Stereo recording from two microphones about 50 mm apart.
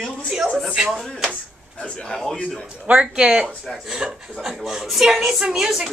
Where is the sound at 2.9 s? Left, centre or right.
Right.